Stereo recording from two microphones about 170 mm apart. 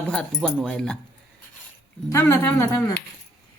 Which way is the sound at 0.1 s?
5° left (ahead or behind).